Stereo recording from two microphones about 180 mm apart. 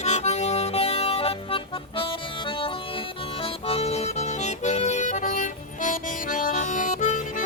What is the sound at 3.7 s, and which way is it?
Music, 35° left (ahead or behind).